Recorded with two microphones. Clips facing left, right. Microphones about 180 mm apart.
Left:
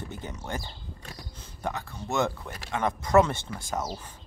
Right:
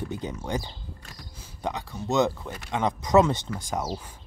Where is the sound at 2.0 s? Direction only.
20° right (ahead or behind).